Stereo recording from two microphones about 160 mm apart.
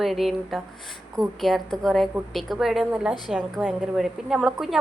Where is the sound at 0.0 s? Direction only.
Centre (ahead or behind).